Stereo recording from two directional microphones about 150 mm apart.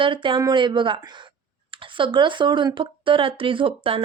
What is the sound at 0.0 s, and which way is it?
Speech, 35° right (ahead or behind).